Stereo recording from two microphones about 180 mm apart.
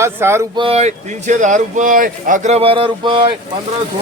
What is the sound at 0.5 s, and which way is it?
Speech, 30° right (ahead or behind).